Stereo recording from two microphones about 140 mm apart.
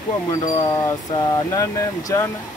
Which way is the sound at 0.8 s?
25° left (ahead or behind).